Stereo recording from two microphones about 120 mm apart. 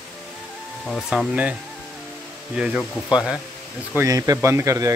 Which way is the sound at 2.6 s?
5° right (ahead or behind).